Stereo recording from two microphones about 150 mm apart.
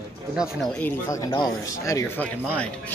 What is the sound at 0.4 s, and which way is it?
Speech, centre (ahead or behind).